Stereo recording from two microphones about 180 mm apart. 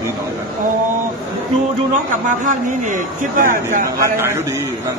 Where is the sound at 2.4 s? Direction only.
45° right (ahead or behind).